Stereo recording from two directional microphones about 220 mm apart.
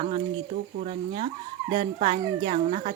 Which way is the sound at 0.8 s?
30° right (ahead or behind).